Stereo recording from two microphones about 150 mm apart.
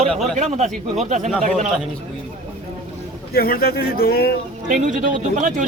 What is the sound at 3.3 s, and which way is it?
Speech, 90° left.